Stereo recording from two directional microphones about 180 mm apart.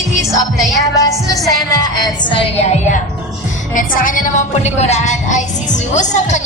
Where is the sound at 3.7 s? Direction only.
50° left (ahead or behind).